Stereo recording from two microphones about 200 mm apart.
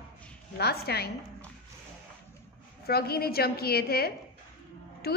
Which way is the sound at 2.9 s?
50° left (ahead or behind).